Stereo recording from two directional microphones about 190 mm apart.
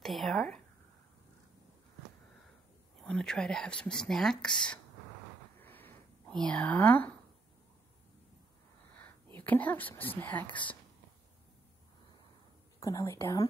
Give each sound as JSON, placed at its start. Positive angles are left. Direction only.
{"t": 0.0, "sound": "speech", "side_deg": 0}
{"t": 3.0, "sound": "speech", "side_deg": 5}
{"t": 5.6, "sound": "a sound", "side_deg": 10}
{"t": 9.3, "sound": "speech", "side_deg": 10}
{"t": 12.8, "sound": "speech", "side_deg": 15}